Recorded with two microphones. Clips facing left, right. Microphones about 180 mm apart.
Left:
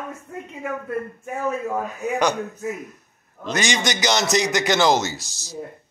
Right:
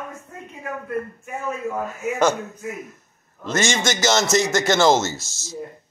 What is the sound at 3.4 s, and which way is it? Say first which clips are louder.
A man's voice: right 1 dB; 15° left (ahead or behind).